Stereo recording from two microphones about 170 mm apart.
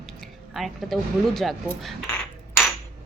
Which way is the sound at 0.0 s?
Centre (ahead or behind).